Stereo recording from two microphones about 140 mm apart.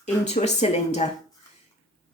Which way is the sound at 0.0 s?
55° left (ahead or behind).